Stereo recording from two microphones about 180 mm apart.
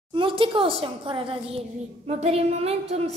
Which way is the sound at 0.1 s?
30° right (ahead or behind).